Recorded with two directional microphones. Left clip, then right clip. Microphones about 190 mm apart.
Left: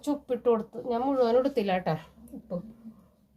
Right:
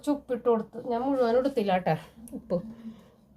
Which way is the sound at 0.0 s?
20° left (ahead or behind).